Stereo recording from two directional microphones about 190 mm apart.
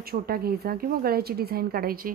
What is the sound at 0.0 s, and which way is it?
Speech, 55° right (ahead or behind).